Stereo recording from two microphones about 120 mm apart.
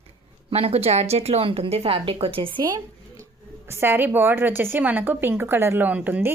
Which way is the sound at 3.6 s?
20° right (ahead or behind).